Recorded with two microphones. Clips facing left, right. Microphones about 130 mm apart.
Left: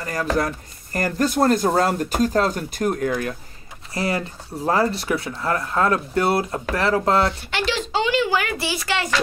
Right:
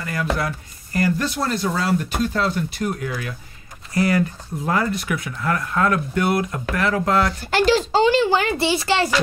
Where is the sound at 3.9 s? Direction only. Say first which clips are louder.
Right 5 dB; 30° left (ahead or behind).